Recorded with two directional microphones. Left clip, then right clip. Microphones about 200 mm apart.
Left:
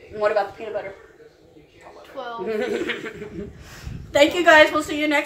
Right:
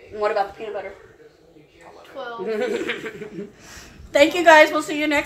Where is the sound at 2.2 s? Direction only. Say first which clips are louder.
Even; 20° left (ahead or behind).